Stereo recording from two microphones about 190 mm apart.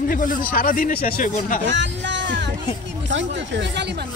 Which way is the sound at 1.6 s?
75° right (ahead or behind).